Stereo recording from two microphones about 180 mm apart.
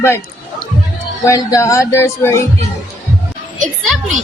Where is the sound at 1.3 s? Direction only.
20° left (ahead or behind).